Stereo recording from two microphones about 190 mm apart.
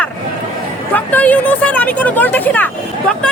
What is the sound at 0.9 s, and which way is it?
Speech, 10° left (ahead or behind).